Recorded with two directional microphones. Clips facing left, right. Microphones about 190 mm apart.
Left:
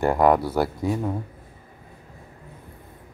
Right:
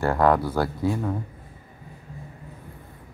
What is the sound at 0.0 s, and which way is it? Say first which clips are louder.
Speech: left 2 dB; 15° left (ahead or behind).